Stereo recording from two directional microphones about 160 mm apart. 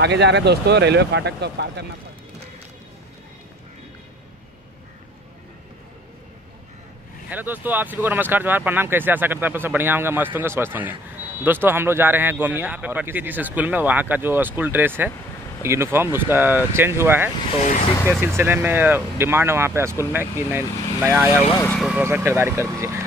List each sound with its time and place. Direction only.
0.0 s speech: 90° right
7.2 s speech: 10° right (ahead or behind)
17.5 s speech: 45° left (ahead or behind)
18.2 s speech: 15° right (ahead or behind)
22.0 s speech: 15° right (ahead or behind)